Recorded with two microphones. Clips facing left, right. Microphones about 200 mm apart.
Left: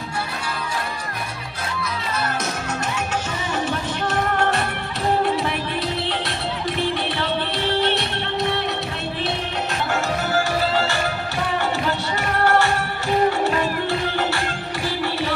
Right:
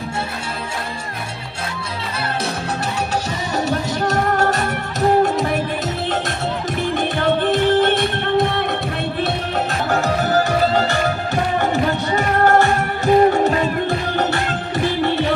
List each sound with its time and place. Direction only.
3.5 s music: 40° right (ahead or behind)
7.0 s music: 50° right (ahead or behind)
9.8 s music: 40° right (ahead or behind)
12.2 s music: 45° right (ahead or behind)